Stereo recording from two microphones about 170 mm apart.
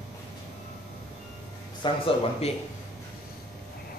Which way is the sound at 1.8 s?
35° left (ahead or behind).